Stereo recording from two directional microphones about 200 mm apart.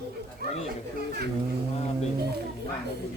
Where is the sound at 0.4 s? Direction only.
50° right (ahead or behind).